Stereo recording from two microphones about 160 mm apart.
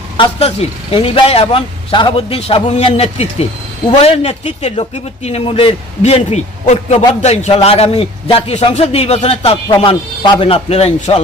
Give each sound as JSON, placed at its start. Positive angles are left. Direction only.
{"t": 0.2, "sound": "a man's voice", "side_deg": 40}